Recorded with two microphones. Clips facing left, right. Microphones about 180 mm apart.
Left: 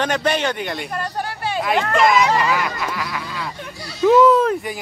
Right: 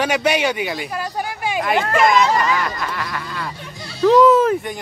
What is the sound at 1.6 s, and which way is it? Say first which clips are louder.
Speech: even; centre (ahead or behind).